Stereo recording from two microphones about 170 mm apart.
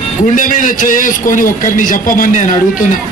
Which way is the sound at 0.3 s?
50° left (ahead or behind).